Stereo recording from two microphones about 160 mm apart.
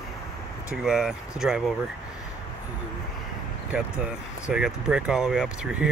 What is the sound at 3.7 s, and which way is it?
Speech, 5° right (ahead or behind).